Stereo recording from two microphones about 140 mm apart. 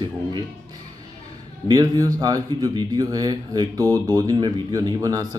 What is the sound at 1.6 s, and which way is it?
Speech, 30° right (ahead or behind).